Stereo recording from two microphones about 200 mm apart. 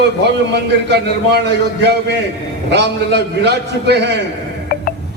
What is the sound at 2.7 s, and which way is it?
A man's voice, 60° right (ahead or behind).